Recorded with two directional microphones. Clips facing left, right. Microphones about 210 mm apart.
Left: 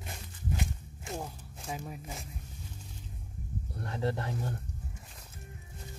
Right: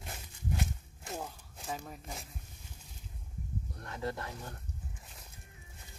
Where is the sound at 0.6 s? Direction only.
Centre (ahead or behind).